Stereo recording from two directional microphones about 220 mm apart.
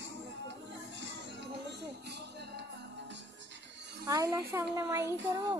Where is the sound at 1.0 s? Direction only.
55° right (ahead or behind).